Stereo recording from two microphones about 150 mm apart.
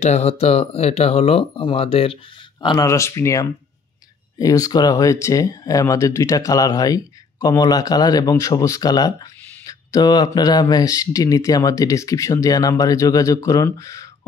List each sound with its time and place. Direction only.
0.0 s speech: 45° left (ahead or behind)
2.6 s speech: 25° left (ahead or behind)